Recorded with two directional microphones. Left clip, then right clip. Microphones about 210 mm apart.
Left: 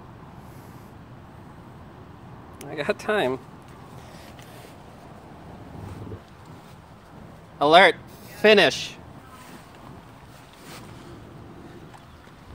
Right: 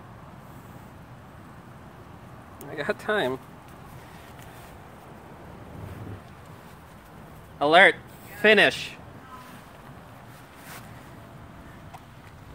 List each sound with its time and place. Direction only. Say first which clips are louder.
2.7 s speech: left 2 dB; 15° left (ahead or behind)
7.5 s a man's voice: left 2 dB; 20° left (ahead or behind)